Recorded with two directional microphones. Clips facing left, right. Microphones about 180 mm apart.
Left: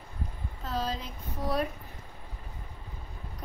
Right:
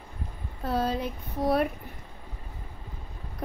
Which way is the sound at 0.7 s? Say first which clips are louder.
Right 6 dB; 60° right (ahead or behind).